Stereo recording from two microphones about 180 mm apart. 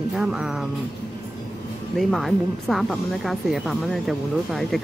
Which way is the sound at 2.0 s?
Centre (ahead or behind).